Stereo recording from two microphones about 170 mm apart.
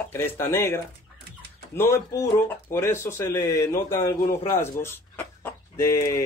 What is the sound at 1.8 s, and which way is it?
Speech, 15° left (ahead or behind).